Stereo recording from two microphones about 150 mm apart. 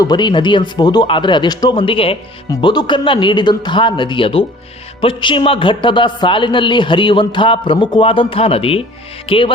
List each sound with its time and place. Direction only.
0.0 s a man's voice: 30° left (ahead or behind)